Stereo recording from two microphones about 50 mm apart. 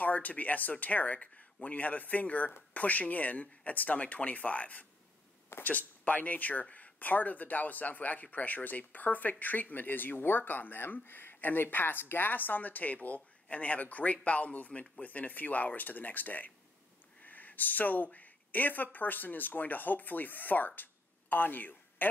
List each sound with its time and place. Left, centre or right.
0.0 s speech: left